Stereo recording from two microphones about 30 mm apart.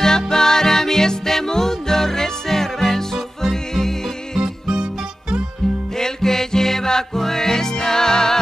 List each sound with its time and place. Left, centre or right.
0.0 s music: centre
5.9 s music: centre